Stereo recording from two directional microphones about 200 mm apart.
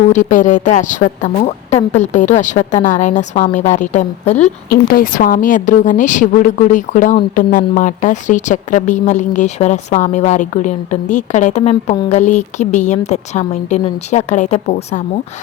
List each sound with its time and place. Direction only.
0.1 s a woman's voice: 40° left (ahead or behind)